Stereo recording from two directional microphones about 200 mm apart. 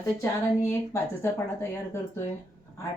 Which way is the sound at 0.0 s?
15° left (ahead or behind).